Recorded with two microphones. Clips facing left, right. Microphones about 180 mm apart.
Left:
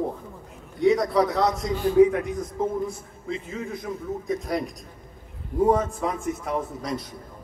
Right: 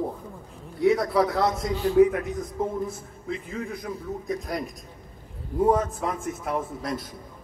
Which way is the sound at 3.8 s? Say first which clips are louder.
Left 2 dB; centre (ahead or behind).